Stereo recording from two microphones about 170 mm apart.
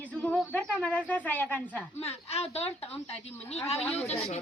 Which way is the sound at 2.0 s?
40° left (ahead or behind).